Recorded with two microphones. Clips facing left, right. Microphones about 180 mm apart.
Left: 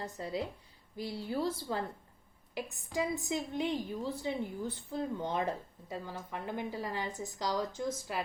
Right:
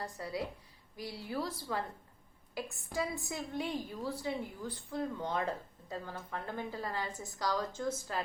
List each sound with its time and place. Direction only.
0.0 s a woman's voice: 25° left (ahead or behind)